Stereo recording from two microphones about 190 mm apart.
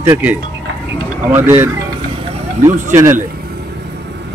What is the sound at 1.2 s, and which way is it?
Speech, 10° right (ahead or behind).